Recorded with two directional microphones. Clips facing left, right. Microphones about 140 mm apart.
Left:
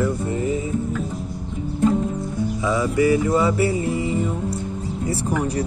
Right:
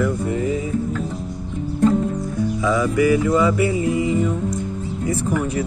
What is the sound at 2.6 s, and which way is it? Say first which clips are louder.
Music: right 1 dB; 25° left (ahead or behind).